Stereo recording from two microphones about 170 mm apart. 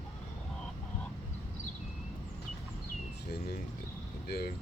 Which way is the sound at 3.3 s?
70° left (ahead or behind).